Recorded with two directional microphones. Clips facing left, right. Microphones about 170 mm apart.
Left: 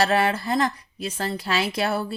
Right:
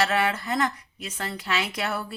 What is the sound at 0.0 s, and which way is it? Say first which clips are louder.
A woman's voice: left 3 dB; 35° left (ahead or behind).